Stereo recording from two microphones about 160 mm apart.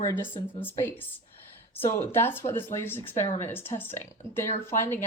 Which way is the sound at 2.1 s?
15° left (ahead or behind).